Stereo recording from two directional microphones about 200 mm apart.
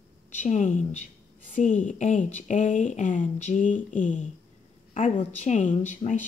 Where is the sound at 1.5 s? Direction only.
40° left (ahead or behind).